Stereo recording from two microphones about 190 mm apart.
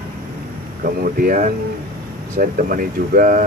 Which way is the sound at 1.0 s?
45° right (ahead or behind).